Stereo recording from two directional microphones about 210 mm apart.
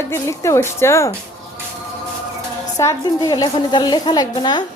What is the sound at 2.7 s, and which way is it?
A woman's voice, 15° left (ahead or behind).